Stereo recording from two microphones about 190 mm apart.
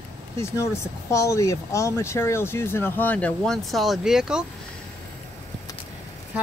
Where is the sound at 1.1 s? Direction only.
15° left (ahead or behind); by 4.5 s 5° right (ahead or behind).